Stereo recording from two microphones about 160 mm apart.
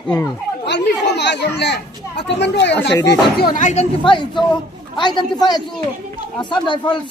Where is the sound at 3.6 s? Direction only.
45° left (ahead or behind).